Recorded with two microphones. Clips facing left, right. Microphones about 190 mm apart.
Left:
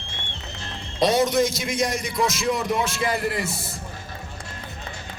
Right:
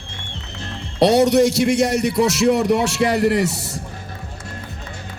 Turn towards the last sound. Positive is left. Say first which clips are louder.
# right 9 dB
turn(degrees=-75)  # may be behind; listen again after turning